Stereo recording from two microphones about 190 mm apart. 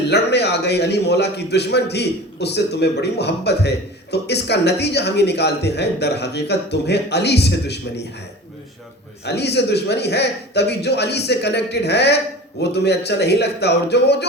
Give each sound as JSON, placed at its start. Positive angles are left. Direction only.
{"t": 0.1, "sound": "a man's voice", "side_deg": 60}
{"t": 9.2, "sound": "a man's voice", "side_deg": 60}